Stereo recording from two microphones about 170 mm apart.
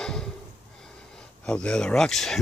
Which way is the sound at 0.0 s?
5° left (ahead or behind).